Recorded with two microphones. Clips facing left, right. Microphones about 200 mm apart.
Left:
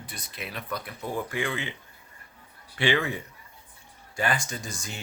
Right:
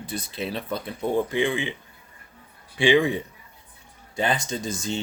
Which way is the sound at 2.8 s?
15° right (ahead or behind).